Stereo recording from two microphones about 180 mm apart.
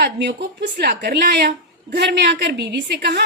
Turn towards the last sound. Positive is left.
turn(degrees=-70)  # may be behind; listen again after turning